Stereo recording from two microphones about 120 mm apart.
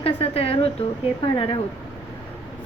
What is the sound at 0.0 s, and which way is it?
A woman's voice, 55° left (ahead or behind).